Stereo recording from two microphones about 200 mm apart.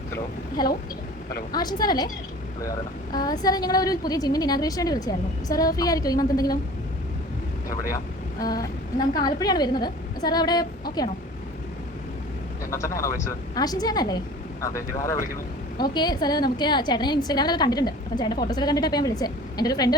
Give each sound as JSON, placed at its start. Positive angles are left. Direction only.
{"t": 0.1, "sound": "a woman's voice", "side_deg": 20}
{"t": 7.7, "sound": "a woman's voice", "side_deg": 15}
{"t": 12.7, "sound": "a woman's voice", "side_deg": 15}